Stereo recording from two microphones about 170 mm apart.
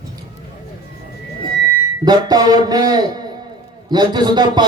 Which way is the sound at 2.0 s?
25° right (ahead or behind).